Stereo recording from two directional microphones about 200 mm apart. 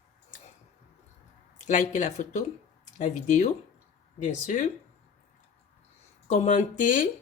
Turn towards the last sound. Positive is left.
turn(degrees=40)  # may be behind; listen again after turning